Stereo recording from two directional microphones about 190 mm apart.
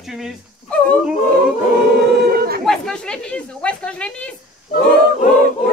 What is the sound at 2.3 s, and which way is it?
Chatter, 50° right (ahead or behind).